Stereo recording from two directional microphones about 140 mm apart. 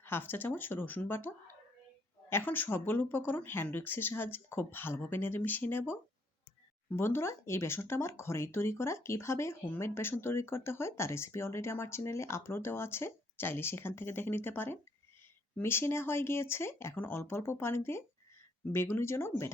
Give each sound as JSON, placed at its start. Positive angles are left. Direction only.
{"t": 0.0, "sound": "speech", "side_deg": 15}
{"t": 2.3, "sound": "speech", "side_deg": 15}